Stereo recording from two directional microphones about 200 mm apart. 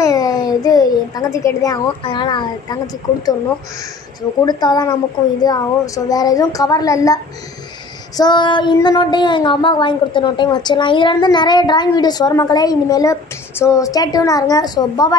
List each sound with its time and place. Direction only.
0.0 s a child's voice: 20° left (ahead or behind)
4.5 s a woman's voice: 20° left (ahead or behind)
8.2 s speech: 20° left (ahead or behind)